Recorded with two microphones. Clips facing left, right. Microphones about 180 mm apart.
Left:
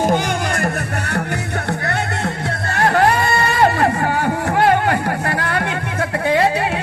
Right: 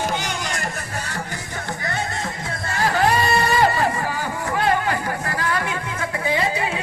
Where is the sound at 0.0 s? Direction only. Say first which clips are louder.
Left 8 dB; 55° left (ahead or behind).